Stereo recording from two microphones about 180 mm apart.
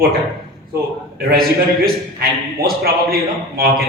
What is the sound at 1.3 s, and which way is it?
A man's voice, 55° right (ahead or behind).